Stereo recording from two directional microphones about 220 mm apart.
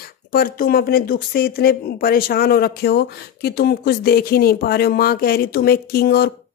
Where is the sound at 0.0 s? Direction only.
45° left (ahead or behind).